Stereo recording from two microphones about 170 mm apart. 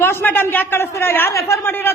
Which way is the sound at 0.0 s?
10° left (ahead or behind).